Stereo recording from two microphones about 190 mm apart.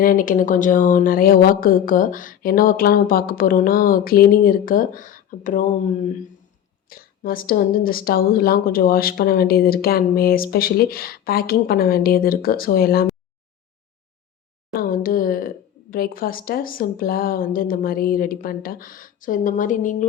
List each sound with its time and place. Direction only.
0.0 s a woman's voice: 45° left (ahead or behind)
6.8 s a woman's voice: 50° left (ahead or behind)
14.8 s speech: 50° left (ahead or behind)